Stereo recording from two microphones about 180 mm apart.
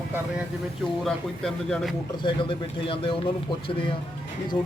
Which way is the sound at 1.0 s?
Centre (ahead or behind).